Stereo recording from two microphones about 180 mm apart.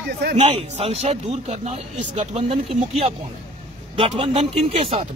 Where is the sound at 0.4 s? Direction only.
35° right (ahead or behind).